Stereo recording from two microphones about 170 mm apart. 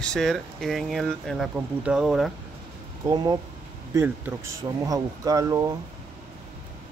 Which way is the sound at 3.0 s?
20° right (ahead or behind).